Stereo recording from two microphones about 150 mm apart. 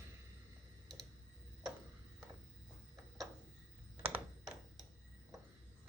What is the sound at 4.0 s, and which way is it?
Computer keyboard, 10° right (ahead or behind).